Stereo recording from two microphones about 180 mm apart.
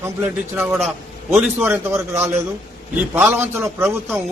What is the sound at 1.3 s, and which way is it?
A man's voice, 5° right (ahead or behind).